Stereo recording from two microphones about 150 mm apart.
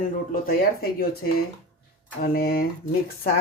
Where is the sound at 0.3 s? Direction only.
80° left.